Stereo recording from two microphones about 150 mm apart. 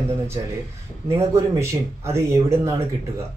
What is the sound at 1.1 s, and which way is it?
Speech, 20° right (ahead or behind).